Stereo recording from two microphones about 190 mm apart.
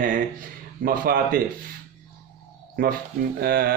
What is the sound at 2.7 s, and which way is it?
Speech, 55° right (ahead or behind).